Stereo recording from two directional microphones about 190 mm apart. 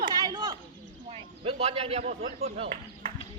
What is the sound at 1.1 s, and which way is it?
Speech, 30° right (ahead or behind).